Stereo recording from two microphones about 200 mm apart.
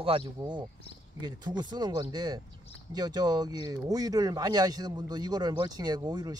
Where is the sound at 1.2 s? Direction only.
20° right (ahead or behind).